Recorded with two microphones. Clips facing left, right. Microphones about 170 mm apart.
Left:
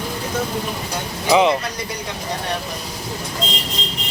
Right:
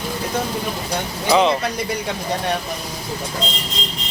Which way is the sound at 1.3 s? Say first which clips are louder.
Left 1 dB; 15° left (ahead or behind).